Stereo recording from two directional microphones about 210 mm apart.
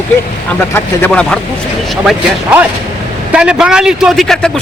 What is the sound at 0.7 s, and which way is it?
Speech, 5° left (ahead or behind).